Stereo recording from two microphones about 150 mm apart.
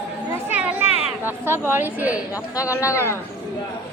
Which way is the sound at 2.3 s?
20° left (ahead or behind).